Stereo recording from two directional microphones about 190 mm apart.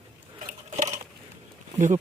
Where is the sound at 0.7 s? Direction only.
35° right (ahead or behind).